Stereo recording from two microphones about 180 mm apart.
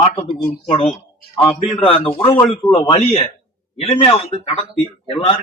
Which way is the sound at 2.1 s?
30° left (ahead or behind).